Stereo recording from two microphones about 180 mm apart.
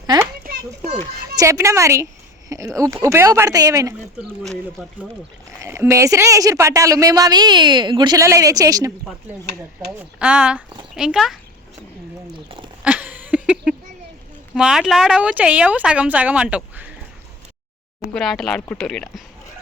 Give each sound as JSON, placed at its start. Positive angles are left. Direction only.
{"t": 1.4, "sound": "speech", "side_deg": -15}
{"t": 5.6, "sound": "a woman's voice", "side_deg": -15}
{"t": 10.2, "sound": "speech", "side_deg": -5}
{"t": 12.5, "sound": "speech", "side_deg": -30}
{"t": 12.8, "sound": "a sound", "side_deg": -10}
{"t": 14.5, "sound": "speech", "side_deg": -5}
{"t": 18.0, "sound": "speech", "side_deg": 0}